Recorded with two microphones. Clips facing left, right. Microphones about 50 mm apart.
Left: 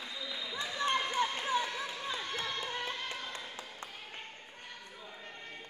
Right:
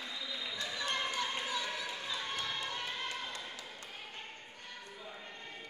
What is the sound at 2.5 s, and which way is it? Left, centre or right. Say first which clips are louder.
Music: left 2 dB; centre.